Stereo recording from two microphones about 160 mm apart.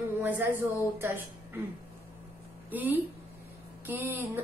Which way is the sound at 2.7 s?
10° right (ahead or behind).